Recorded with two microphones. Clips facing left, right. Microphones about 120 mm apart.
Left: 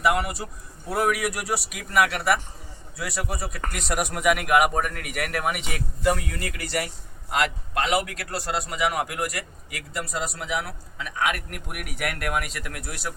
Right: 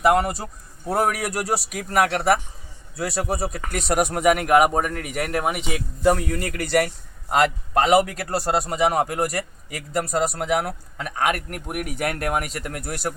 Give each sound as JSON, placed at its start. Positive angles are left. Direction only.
{"t": 0.0, "sound": "a man's voice", "side_deg": -40}
{"t": 6.0, "sound": "a man's voice", "side_deg": -40}